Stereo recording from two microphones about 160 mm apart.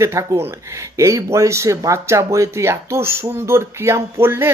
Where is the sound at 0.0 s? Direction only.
20° right (ahead or behind).